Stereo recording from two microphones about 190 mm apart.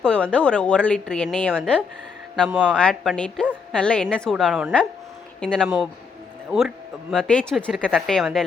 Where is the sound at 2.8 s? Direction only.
5° left (ahead or behind).